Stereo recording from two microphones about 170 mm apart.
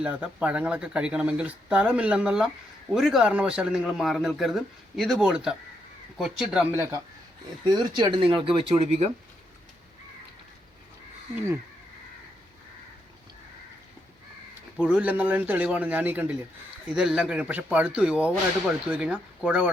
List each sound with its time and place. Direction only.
0.0 s speech: 5° right (ahead or behind)
7.6 s speech: 25° right (ahead or behind)
14.8 s speech: 5° right (ahead or behind)